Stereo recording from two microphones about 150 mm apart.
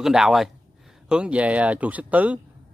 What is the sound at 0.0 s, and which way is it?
A man's voice, 5° right (ahead or behind).